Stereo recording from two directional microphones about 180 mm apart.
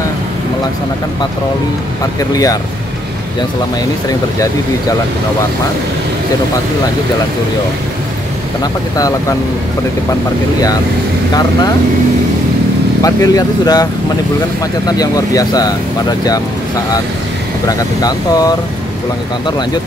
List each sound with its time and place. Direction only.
2.1 s speech: 20° left (ahead or behind)
13.0 s speech: 20° left (ahead or behind)
14.9 s speech: 20° left (ahead or behind)
17.6 s speech: 20° left (ahead or behind)